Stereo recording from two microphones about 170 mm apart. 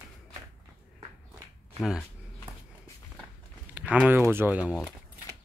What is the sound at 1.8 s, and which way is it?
Speech, centre (ahead or behind).